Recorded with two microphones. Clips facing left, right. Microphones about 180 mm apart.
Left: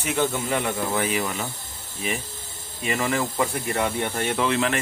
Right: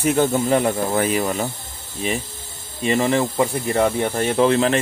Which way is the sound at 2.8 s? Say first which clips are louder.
Right 6 dB; 30° right (ahead or behind).